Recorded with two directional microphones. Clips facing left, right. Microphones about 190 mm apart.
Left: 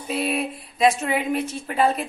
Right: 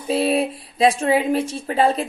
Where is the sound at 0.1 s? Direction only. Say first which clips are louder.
Right 6 dB; 30° right (ahead or behind).